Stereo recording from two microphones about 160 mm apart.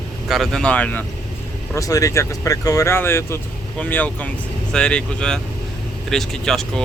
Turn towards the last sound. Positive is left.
turn(degrees=0)  # may be behind; listen again after turning